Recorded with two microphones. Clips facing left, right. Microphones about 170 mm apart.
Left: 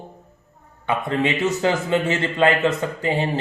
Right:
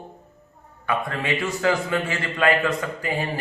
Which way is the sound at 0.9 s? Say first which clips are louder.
Left 4 dB; 20° left (ahead or behind).